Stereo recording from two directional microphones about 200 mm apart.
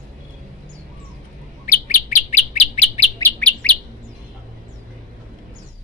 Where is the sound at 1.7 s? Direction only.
40° left (ahead or behind).